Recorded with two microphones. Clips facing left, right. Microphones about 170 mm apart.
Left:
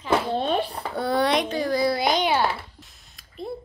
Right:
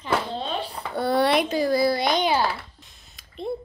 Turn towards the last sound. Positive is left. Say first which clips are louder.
# right 3 dB
turn(degrees=0)  # may be behind; listen again after turning